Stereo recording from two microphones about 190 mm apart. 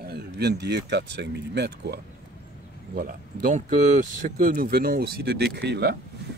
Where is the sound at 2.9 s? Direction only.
50° right (ahead or behind).